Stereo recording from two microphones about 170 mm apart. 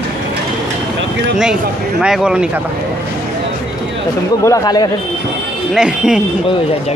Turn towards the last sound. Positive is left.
turn(degrees=-5)  # may be behind; listen again after turning